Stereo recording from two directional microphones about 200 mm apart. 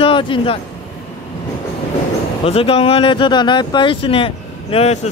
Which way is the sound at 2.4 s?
30° left (ahead or behind).